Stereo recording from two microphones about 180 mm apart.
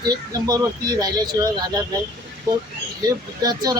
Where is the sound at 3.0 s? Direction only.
20° right (ahead or behind).